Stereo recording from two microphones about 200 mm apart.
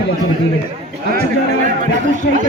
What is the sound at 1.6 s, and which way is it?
Speech, 40° right (ahead or behind).